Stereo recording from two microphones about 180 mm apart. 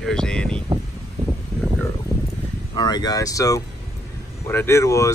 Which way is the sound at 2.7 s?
25° left (ahead or behind).